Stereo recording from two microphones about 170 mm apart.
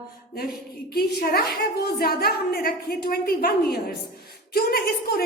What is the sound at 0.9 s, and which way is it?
A man's voice, 65° left (ahead or behind).